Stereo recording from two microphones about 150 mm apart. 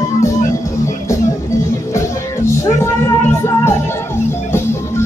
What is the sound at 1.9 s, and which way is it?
Music, 20° left (ahead or behind).